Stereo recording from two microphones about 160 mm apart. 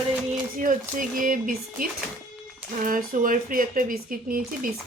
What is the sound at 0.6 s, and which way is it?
Speech, 60° right (ahead or behind).